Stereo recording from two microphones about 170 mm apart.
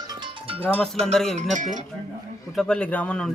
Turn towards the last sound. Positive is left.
turn(degrees=5)  # may be behind; listen again after turning